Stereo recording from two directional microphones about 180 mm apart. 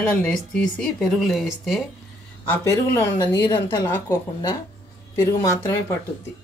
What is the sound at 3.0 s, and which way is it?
Speech, 15° left (ahead or behind).